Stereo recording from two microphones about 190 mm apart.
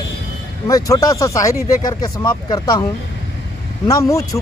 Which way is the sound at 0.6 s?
15° left (ahead or behind).